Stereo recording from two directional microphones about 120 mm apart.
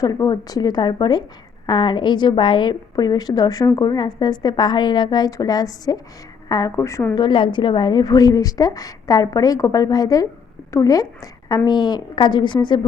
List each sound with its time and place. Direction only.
0.0 s a woman's voice: 30° left (ahead or behind)
7.2 s a woman's voice: 45° left (ahead or behind)